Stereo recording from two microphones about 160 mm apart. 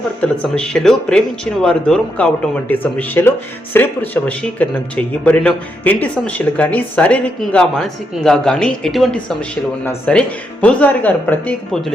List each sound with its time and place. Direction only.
0.2 s speech: 5° left (ahead or behind)